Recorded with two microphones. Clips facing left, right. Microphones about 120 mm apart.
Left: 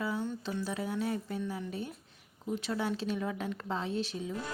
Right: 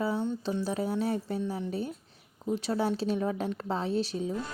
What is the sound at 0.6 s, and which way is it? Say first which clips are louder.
Speech: right 3 dB; 35° right (ahead or behind).